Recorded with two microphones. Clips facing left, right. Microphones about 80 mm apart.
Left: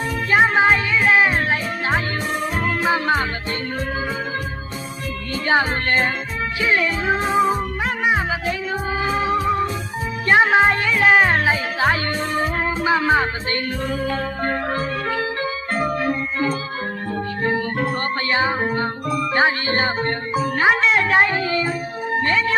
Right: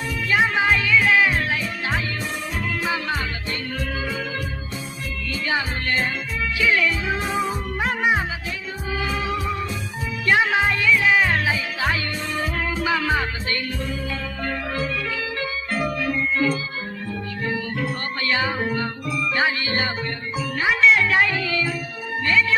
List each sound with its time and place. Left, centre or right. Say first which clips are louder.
0.3 s music: left 4 dB; left
5.3 s music: left 6 dB; left
6.6 s music: left 1 dB; left
18.3 s music: left 2 dB; left